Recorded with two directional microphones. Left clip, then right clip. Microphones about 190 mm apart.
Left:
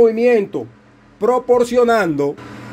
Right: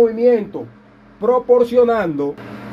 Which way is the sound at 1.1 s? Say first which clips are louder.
Right 1 dB; 35° left (ahead or behind).